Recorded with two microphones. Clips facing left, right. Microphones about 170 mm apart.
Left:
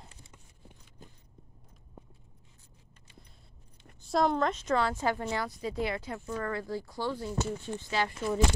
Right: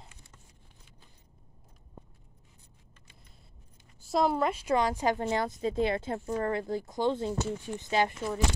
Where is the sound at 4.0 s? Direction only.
5° right (ahead or behind).